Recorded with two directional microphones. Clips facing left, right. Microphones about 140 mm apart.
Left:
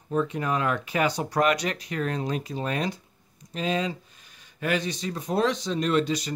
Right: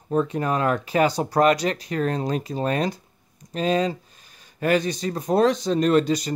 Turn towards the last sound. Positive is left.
turn(degrees=-40)  # may be behind; listen again after turning